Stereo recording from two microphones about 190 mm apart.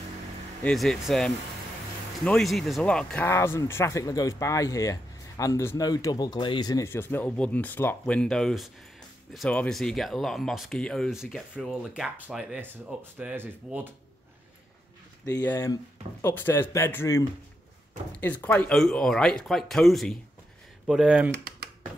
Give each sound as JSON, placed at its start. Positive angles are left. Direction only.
{"t": 0.7, "sound": "speech", "side_deg": 0}
{"t": 15.2, "sound": "speech", "side_deg": 15}